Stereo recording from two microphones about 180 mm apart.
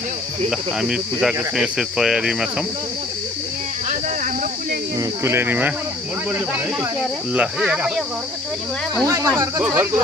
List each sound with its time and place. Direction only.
0.5 s speech: 5° right (ahead or behind)
4.9 s speech: 15° right (ahead or behind)
7.3 s speech: 5° right (ahead or behind)
9.0 s speech: 20° right (ahead or behind)